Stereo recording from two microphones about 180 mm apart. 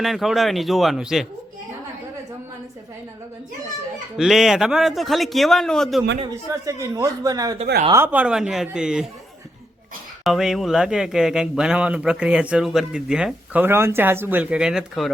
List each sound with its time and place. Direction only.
0.0 s speech: centre (ahead or behind)
4.2 s speech: centre (ahead or behind)
6.2 s speech: 15° right (ahead or behind)
10.2 s speech: centre (ahead or behind)